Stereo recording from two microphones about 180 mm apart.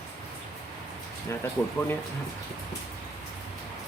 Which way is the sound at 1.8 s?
10° left (ahead or behind).